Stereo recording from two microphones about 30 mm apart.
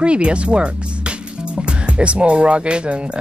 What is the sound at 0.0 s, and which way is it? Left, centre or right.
Speech, right.